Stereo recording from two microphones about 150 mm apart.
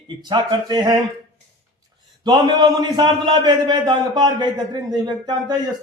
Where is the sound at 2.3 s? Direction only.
30° right (ahead or behind).